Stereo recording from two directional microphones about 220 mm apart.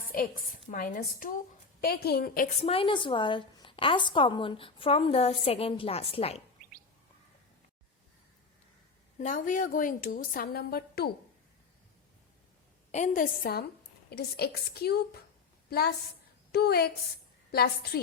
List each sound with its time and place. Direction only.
0.1 s a woman's voice: 40° left (ahead or behind)
2.6 s a woman's voice: 25° left (ahead or behind)
9.1 s a woman's voice: 35° left (ahead or behind)
12.9 s a woman's voice: 35° left (ahead or behind)